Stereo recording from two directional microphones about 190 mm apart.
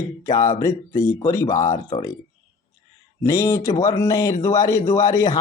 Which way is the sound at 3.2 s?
20° left (ahead or behind).